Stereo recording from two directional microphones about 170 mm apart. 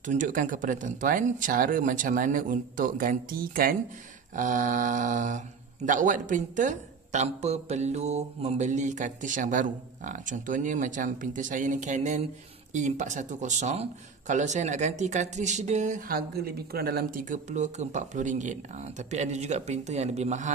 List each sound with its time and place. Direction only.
0.0 s speech: 50° right (ahead or behind)
16.1 s speech: 60° right (ahead or behind); by 20.5 s 45° right (ahead or behind)